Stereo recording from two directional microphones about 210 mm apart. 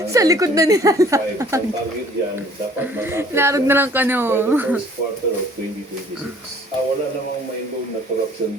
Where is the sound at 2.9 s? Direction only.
10° right (ahead or behind).